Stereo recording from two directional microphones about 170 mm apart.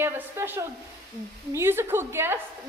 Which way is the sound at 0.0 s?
15° right (ahead or behind).